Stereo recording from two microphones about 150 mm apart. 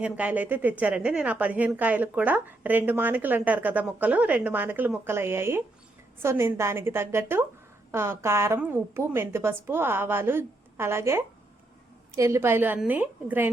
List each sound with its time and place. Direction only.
0.0 s a woman's voice: 10° right (ahead or behind)